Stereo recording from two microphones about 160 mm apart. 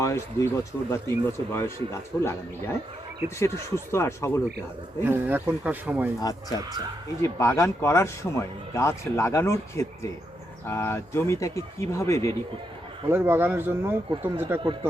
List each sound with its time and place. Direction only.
0.0 s speech: 20° left (ahead or behind)
5.0 s speech: 10° right (ahead or behind)
6.1 s speech: 25° left (ahead or behind)
13.1 s speech: 15° right (ahead or behind)